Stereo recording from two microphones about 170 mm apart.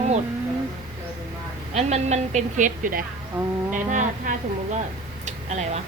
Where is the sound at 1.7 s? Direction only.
40° right (ahead or behind).